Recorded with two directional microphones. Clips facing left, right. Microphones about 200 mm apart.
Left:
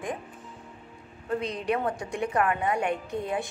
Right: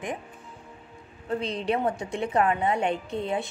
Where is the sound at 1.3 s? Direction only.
30° right (ahead or behind).